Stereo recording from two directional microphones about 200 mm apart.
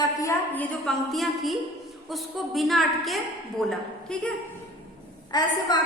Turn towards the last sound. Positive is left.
turn(degrees=20)  # may be behind; listen again after turning